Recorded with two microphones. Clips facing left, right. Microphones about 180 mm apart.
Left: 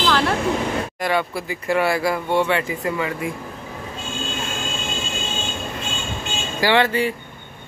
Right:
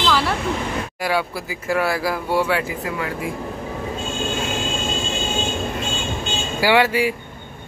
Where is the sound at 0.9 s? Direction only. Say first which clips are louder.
Left 1 dB; 5° right (ahead or behind).